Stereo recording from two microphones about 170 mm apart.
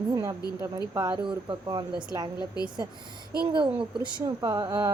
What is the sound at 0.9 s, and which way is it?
Speech, 25° right (ahead or behind).